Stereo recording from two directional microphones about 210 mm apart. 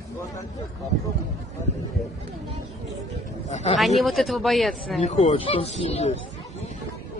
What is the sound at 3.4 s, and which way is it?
Speech, 30° left (ahead or behind).